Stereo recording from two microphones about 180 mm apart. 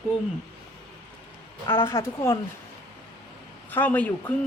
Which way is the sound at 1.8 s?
15° left (ahead or behind).